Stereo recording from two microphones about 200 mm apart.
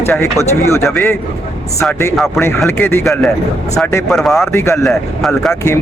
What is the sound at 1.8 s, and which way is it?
Speech, 10° left (ahead or behind).